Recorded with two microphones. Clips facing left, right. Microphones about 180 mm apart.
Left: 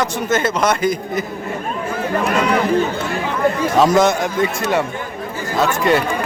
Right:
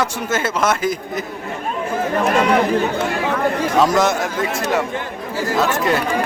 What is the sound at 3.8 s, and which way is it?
A man's voice, centre (ahead or behind).